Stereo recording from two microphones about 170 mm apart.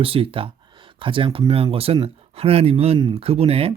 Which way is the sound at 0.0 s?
30° right (ahead or behind).